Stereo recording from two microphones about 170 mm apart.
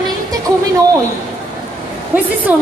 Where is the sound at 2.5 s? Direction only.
10° right (ahead or behind).